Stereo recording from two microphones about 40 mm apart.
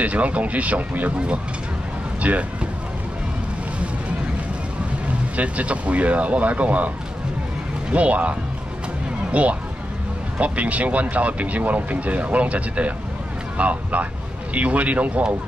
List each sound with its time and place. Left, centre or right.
0.0 s speech: right
2.2 s speech: right
5.3 s speech: right
7.9 s speech: right